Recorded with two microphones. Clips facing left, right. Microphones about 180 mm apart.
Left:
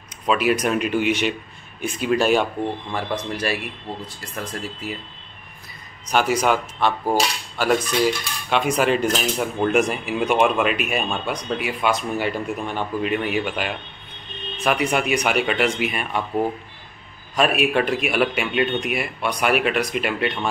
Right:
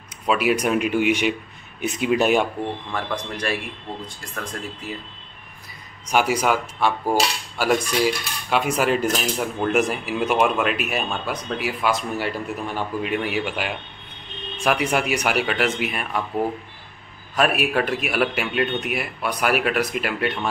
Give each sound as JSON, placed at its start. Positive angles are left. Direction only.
{"t": 0.3, "sound": "speech", "side_deg": -10}
{"t": 2.9, "sound": "speech", "side_deg": 5}
{"t": 6.0, "sound": "speech", "side_deg": -10}
{"t": 17.4, "sound": "speech", "side_deg": -5}